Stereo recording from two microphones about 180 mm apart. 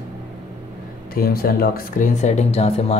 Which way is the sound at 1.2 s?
55° left (ahead or behind).